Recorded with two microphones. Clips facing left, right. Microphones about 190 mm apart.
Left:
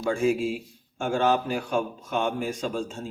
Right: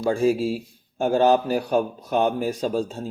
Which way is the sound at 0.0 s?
35° right (ahead or behind).